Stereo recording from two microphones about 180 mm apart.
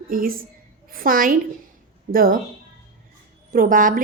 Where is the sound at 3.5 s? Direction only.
50° right (ahead or behind).